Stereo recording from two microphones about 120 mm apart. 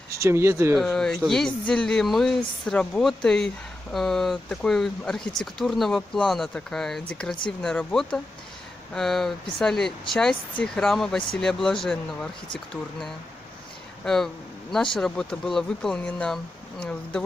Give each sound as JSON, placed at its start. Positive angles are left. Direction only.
{"t": 0.1, "sound": "speech", "side_deg": -25}
{"t": 0.7, "sound": "speech", "side_deg": 5}
{"t": 14.0, "sound": "speech", "side_deg": 5}